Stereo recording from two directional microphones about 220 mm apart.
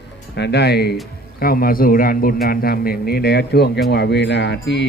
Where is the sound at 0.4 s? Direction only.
50° left (ahead or behind).